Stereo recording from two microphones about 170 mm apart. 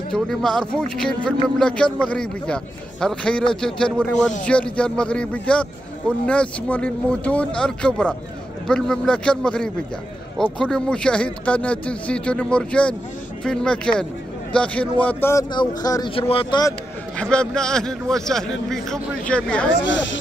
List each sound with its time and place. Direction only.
0.1 s a man's voice: 5° left (ahead or behind)
15.5 s speech: 25° left (ahead or behind)
17.2 s a man's voice: 5° left (ahead or behind)